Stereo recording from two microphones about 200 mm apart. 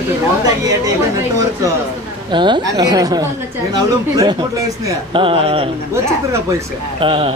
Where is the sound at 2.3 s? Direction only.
25° right (ahead or behind).